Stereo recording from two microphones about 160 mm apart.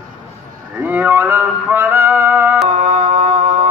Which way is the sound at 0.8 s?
10° right (ahead or behind).